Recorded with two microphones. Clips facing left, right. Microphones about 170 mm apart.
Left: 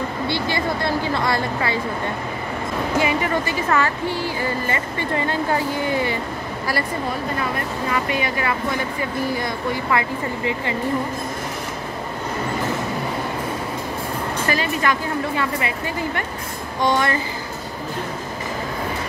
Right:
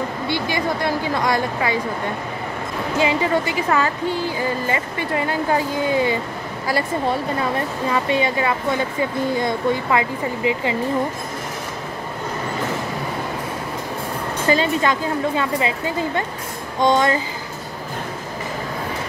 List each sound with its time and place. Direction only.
0.3 s speech: 15° right (ahead or behind)
3.0 s speech: 15° right (ahead or behind)
7.9 s a woman's voice: 25° right (ahead or behind)
14.5 s a woman's voice: 20° right (ahead or behind)